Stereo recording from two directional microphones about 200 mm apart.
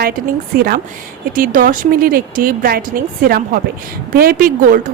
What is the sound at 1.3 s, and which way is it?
Speech, 45° right (ahead or behind).